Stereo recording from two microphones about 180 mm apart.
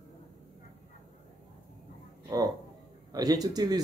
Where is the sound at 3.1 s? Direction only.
20° right (ahead or behind).